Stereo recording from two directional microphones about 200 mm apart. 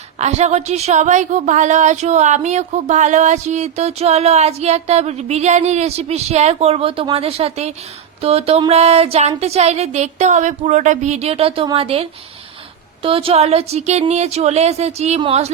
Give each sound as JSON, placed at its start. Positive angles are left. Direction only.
{"t": 0.2, "sound": "a woman's voice", "side_deg": -35}